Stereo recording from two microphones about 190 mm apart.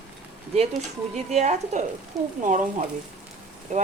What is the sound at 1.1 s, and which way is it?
Speech, 35° right (ahead or behind).